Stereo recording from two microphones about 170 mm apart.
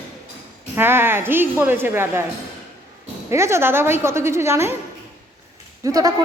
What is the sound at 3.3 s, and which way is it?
A woman's voice, 15° right (ahead or behind).